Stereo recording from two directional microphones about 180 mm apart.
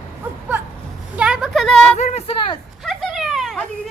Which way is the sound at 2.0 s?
35° left (ahead or behind).